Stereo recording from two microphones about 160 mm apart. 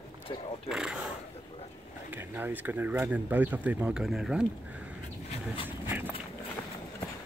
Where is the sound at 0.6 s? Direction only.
5° right (ahead or behind).